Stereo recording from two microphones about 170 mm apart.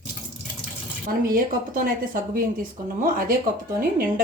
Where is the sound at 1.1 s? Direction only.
55° right (ahead or behind).